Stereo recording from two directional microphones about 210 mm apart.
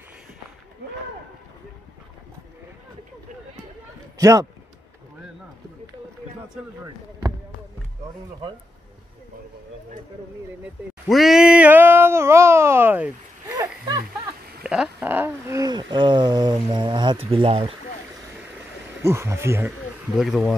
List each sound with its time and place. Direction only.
4.2 s a man's voice: 15° right (ahead or behind)
10.6 s speech: centre (ahead or behind); by 17.7 s 25° right (ahead or behind)
19.0 s speech: 10° right (ahead or behind)
20.2 s speech: centre (ahead or behind)